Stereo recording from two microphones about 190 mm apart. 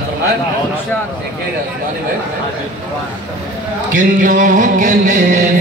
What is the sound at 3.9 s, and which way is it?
Music, 45° right (ahead or behind).